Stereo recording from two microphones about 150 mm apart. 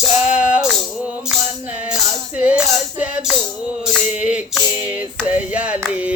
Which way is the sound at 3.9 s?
5° right (ahead or behind).